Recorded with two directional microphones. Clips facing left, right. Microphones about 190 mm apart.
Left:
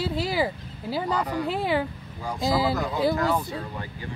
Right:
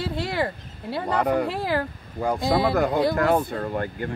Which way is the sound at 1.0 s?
60° right (ahead or behind).